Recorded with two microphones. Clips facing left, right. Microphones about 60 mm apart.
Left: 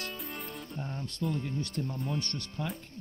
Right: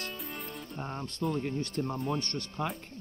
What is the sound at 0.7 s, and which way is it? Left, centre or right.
Music, right.